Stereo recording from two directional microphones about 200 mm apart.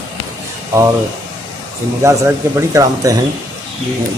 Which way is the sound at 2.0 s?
15° right (ahead or behind).